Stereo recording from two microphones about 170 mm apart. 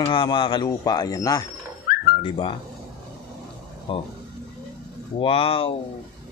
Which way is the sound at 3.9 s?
30° left (ahead or behind).